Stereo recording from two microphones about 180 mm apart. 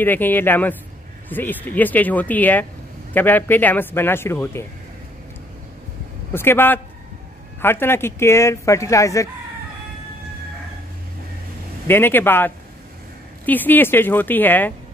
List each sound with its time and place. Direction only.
0.0 s speech: 10° left (ahead or behind)
6.3 s speech: 10° left (ahead or behind)
11.9 s speech: 10° left (ahead or behind)